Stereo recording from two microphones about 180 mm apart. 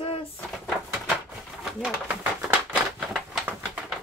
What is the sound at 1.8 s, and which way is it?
Speech, 5° right (ahead or behind).